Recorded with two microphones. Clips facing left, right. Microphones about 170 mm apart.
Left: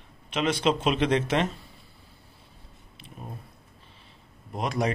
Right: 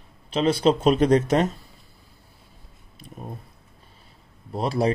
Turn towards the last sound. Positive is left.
turn(degrees=-30)  # may be behind; listen again after turning